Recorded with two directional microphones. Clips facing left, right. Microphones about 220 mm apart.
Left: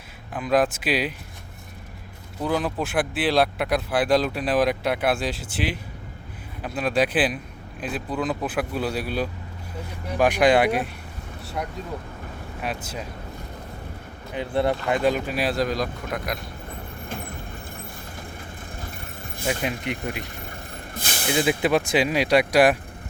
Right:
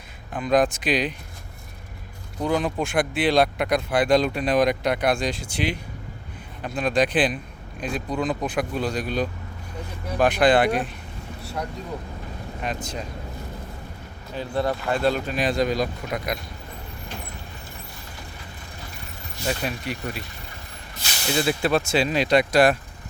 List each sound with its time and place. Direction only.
0.3 s speech: 5° left (ahead or behind)
2.4 s speech: 5° left (ahead or behind)
12.6 s speech: 5° left (ahead or behind)
14.3 s speech: 20° left (ahead or behind); by 16.4 s centre (ahead or behind)
18.8 s vehicle: 50° left (ahead or behind)
19.5 s speech: 20° left (ahead or behind)
20.9 s vehicle: 50° left (ahead or behind)
21.2 s speech: 15° left (ahead or behind)